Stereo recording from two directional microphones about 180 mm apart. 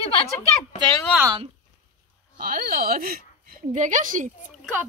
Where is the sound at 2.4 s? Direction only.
50° right (ahead or behind).